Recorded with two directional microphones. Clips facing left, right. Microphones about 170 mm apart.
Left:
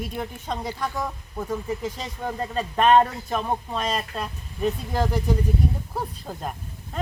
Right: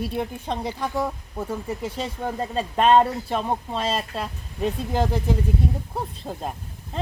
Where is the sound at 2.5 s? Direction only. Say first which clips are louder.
Even; 25° right (ahead or behind).